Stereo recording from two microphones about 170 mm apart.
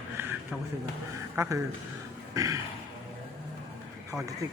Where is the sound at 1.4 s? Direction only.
15° right (ahead or behind).